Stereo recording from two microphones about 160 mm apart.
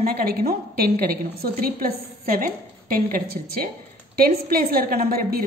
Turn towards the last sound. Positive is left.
turn(degrees=-70)  # may be behind; listen again after turning